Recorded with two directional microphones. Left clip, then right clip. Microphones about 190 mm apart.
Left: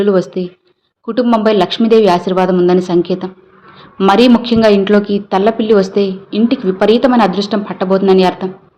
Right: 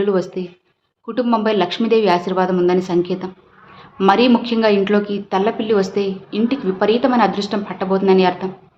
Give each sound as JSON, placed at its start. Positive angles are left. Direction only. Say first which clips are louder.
{"t": 0.0, "sound": "speech", "louder": "left 6 dB", "side_deg": 20}